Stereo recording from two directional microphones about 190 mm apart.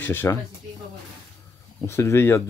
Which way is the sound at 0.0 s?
10° left (ahead or behind).